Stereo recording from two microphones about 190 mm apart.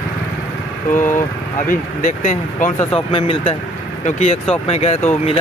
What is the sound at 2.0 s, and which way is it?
Speech, 45° left (ahead or behind).